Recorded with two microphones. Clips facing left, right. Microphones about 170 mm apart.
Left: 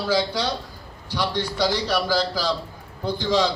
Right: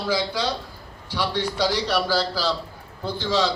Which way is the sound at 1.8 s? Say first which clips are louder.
Even; 10° left (ahead or behind).